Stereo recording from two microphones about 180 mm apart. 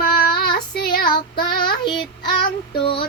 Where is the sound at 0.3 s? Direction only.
60° left (ahead or behind).